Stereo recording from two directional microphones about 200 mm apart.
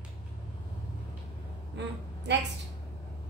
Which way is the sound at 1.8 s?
60° right (ahead or behind).